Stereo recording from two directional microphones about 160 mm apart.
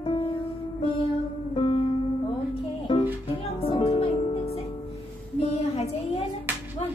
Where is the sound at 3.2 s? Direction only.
35° left (ahead or behind).